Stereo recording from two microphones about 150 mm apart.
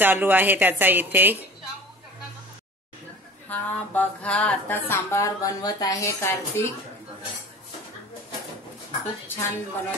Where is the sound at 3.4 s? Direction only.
10° left (ahead or behind).